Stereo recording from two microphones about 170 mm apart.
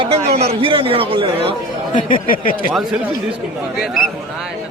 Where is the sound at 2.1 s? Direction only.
55° left (ahead or behind).